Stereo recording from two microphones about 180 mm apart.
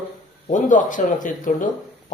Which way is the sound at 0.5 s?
45° left (ahead or behind).